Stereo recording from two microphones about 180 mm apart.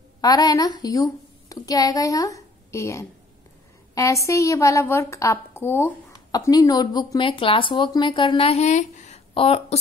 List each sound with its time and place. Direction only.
0.2 s a child's voice: 20° left (ahead or behind)